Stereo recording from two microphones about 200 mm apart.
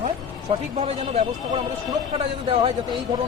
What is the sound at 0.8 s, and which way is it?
Speech, 35° right (ahead or behind).